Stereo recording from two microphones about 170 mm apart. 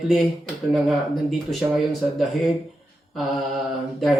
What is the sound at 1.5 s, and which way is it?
Speech, centre (ahead or behind).